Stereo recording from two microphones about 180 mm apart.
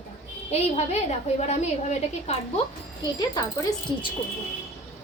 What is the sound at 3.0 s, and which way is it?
Speech, 20° left (ahead or behind).